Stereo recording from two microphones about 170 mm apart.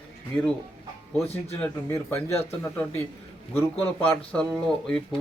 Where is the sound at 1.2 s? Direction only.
35° left (ahead or behind).